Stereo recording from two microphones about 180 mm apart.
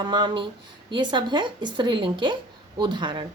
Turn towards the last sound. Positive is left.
turn(degrees=-25)  # may be behind; listen again after turning